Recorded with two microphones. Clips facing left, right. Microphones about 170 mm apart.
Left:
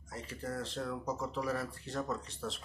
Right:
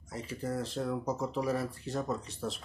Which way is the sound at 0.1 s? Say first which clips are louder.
Right 5 dB; 15° right (ahead or behind).